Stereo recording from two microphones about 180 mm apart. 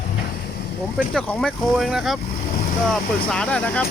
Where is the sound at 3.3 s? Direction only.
5° left (ahead or behind).